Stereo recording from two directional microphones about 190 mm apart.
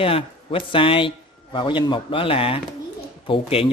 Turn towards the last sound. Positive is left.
turn(degrees=30)  # may be behind; listen again after turning